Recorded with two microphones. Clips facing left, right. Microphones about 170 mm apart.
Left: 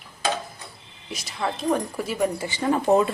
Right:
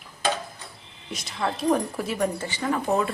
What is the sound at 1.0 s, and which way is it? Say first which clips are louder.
Speech: even; centre (ahead or behind).